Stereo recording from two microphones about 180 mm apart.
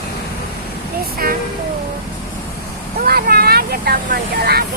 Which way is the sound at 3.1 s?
55° right (ahead or behind).